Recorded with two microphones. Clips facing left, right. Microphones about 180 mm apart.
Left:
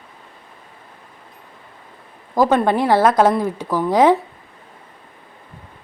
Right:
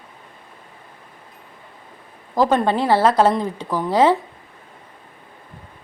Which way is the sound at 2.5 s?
15° left (ahead or behind).